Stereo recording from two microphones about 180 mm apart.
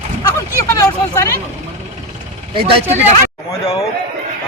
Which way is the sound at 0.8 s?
15° left (ahead or behind).